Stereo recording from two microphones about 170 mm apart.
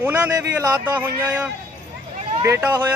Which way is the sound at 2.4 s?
15° right (ahead or behind).